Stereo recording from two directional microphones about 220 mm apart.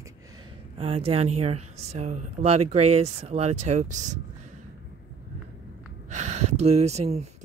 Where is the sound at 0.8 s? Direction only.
25° right (ahead or behind).